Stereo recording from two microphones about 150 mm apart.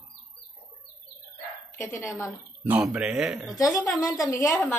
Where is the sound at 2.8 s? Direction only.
5° right (ahead or behind).